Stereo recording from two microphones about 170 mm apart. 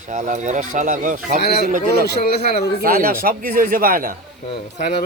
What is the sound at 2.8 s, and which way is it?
Speech, 60° right (ahead or behind).